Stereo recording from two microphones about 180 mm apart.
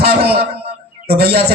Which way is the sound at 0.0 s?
60° right (ahead or behind).